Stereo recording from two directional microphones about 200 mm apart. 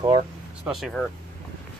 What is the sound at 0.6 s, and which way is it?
Speech, centre (ahead or behind).